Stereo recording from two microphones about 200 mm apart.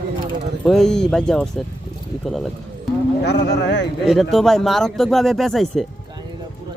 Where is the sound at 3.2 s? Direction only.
60° left (ahead or behind).